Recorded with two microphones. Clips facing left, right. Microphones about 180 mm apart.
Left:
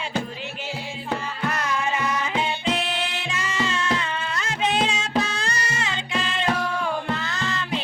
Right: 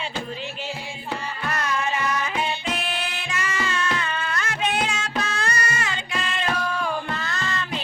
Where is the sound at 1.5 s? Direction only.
15° left (ahead or behind).